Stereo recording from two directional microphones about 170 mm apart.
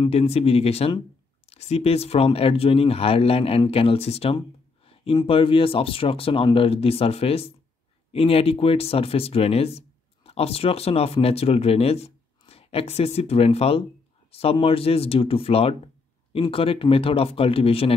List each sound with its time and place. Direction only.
0.0 s speech: 35° left (ahead or behind)